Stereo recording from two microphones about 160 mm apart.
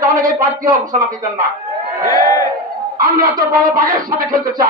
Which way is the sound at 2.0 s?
20° left (ahead or behind).